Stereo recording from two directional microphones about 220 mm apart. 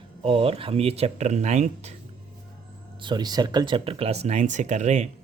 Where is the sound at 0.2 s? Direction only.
25° right (ahead or behind).